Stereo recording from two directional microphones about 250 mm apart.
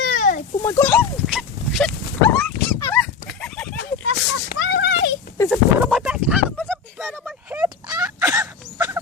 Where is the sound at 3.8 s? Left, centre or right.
Left.